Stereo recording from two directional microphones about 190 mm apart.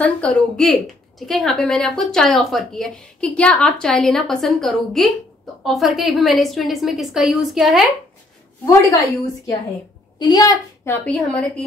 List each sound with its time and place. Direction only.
0.0 s speech: 5° left (ahead or behind)
8.6 s a woman's voice: 20° left (ahead or behind)
11.1 s a woman's voice: 5° left (ahead or behind)